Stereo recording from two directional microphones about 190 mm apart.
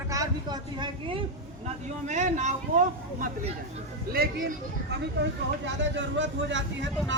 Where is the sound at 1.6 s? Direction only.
40° right (ahead or behind).